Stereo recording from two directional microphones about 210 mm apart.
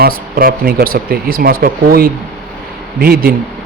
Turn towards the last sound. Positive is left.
turn(degrees=-45)  # may be behind; listen again after turning